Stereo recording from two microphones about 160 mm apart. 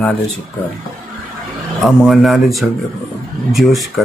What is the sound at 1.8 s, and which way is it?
Speech, centre (ahead or behind).